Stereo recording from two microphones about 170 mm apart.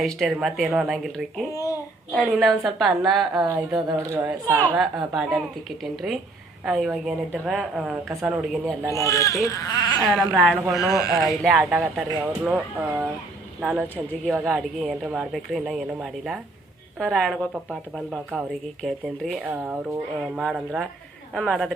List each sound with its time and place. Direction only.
0.0 s a woman's voice: centre (ahead or behind)
1.5 s babbling: 20° left (ahead or behind)
2.2 s a woman's voice: centre (ahead or behind)
3.9 s speech: 15° right (ahead or behind)
4.8 s a woman's voice: centre (ahead or behind)
8.1 s speech: 15° right (ahead or behind)
9.0 s speech: 20° left (ahead or behind)
10.2 s a woman's voice: centre (ahead or behind)